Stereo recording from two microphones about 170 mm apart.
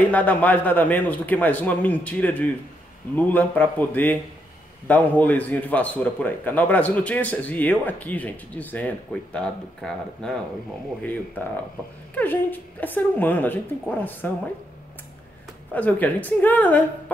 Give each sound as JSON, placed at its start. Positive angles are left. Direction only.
{"t": 0.1, "sound": "a man's voice", "side_deg": 10}
{"t": 12.2, "sound": "a man's voice", "side_deg": 10}
{"t": 15.7, "sound": "a man's voice", "side_deg": 10}